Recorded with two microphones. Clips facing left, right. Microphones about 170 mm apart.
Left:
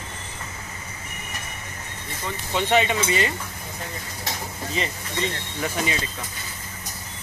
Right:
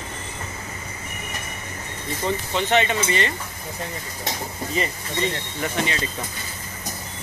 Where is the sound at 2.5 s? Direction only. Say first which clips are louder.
Left 1 dB; 5° left (ahead or behind).